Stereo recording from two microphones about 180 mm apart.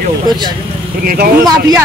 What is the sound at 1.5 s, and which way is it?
Speech, 20° right (ahead or behind).